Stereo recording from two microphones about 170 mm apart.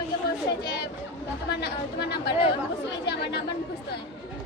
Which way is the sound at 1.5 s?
85° left.